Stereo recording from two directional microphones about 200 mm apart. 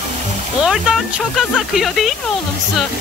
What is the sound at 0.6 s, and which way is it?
Speech, centre (ahead or behind).